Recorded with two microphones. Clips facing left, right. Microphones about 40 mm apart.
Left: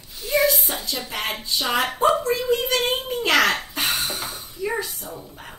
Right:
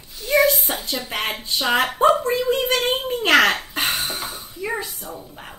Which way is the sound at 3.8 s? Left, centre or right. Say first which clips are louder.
Right 1 dB; right.